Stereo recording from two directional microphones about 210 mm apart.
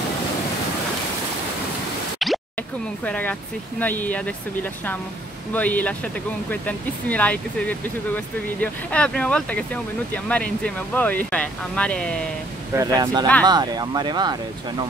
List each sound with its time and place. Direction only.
2.1 s plop: centre (ahead or behind)
3.1 s speech: 10° left (ahead or behind)
5.5 s speech: 10° left (ahead or behind)
12.7 s speech: 15° right (ahead or behind)